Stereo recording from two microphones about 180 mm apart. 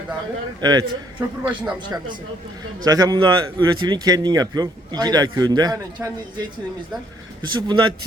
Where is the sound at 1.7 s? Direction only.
25° right (ahead or behind).